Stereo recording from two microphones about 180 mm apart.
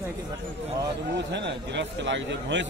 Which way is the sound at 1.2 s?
75° right (ahead or behind).